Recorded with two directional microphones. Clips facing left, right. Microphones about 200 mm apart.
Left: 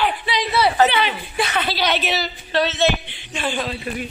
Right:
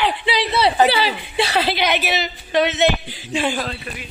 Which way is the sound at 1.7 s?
10° right (ahead or behind).